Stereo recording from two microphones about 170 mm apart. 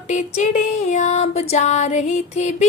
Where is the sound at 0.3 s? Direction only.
45° left (ahead or behind).